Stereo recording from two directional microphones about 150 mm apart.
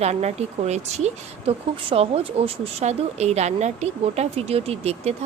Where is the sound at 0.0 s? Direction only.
45° right (ahead or behind).